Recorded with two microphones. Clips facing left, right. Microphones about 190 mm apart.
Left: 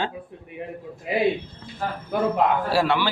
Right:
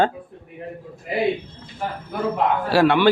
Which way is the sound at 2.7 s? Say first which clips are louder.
Right 6 dB; 60° right (ahead or behind).